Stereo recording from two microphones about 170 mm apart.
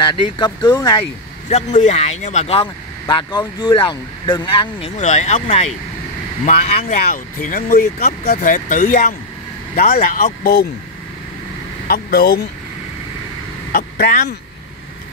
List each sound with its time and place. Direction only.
0.1 s speech: 30° left (ahead or behind)
1.5 s speech: 45° left (ahead or behind)
11.9 s speech: 65° left (ahead or behind)
13.7 s speech: 55° left (ahead or behind)